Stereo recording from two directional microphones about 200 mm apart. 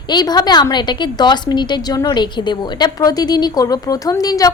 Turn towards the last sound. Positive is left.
turn(degrees=20)  # may be behind; listen again after turning